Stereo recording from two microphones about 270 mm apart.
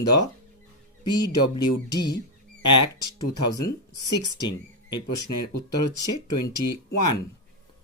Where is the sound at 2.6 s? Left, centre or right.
Left.